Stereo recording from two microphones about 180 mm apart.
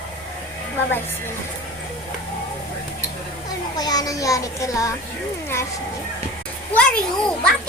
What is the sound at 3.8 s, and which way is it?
A child's voice, 20° left (ahead or behind).